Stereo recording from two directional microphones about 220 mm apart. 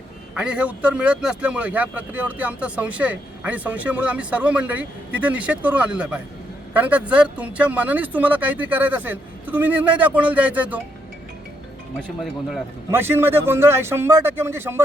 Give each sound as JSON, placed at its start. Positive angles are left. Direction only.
{"t": 0.3, "sound": "speech", "side_deg": -5}
{"t": 11.9, "sound": "speech", "side_deg": 0}